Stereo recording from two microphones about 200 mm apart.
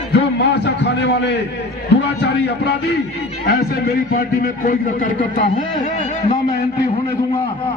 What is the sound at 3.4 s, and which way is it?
A man's voice, 50° left (ahead or behind).